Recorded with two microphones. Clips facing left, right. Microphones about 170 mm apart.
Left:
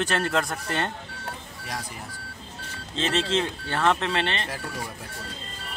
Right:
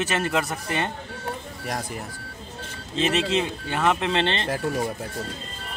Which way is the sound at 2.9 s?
10° right (ahead or behind).